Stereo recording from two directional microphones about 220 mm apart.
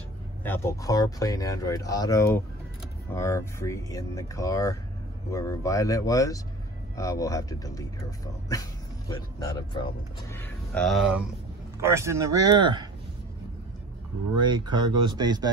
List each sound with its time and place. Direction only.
0.4 s speech: 10° left (ahead or behind)
9.1 s speech: 20° left (ahead or behind)
10.3 s speech: 10° left (ahead or behind)
11.8 s speech: 10° right (ahead or behind)
14.3 s speech: 20° right (ahead or behind)